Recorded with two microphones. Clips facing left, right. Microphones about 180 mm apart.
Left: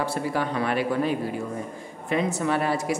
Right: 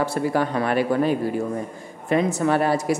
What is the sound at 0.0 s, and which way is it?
A man's voice, 45° right (ahead or behind).